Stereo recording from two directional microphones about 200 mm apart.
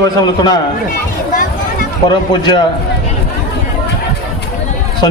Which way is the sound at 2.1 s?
20° left (ahead or behind).